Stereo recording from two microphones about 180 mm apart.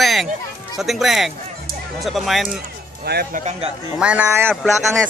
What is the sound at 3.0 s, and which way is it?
Speech, 60° right (ahead or behind).